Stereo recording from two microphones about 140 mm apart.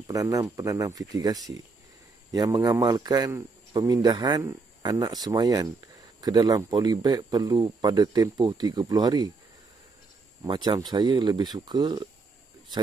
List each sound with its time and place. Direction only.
0.0 s speech: 25° right (ahead or behind)
10.4 s speech: 35° right (ahead or behind)